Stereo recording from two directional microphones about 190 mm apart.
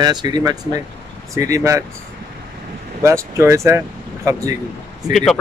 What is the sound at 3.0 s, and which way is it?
Speech, 15° right (ahead or behind).